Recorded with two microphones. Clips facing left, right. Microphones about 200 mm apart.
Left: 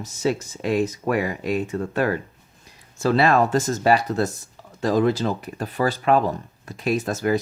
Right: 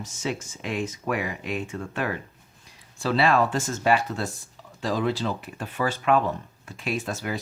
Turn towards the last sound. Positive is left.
turn(degrees=40)  # may be behind; listen again after turning